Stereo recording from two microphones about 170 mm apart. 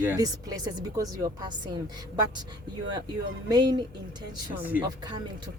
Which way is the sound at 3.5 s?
25° right (ahead or behind).